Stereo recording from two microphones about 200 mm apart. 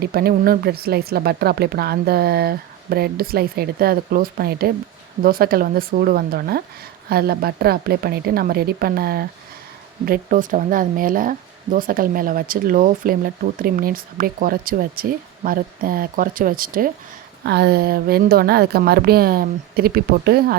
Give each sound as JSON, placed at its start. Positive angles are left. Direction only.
{"t": 0.0, "sound": "speech", "side_deg": -50}
{"t": 17.4, "sound": "speech", "side_deg": -55}